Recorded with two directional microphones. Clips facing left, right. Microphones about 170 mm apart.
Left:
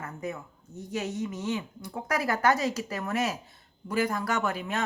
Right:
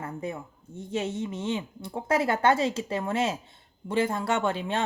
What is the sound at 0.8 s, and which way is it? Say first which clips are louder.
Speech: right 2 dB; 25° right (ahead or behind).